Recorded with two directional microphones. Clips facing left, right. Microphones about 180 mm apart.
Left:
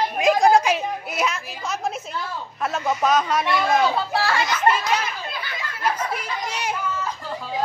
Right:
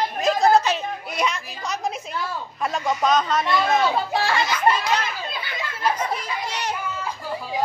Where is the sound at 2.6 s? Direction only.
5° left (ahead or behind).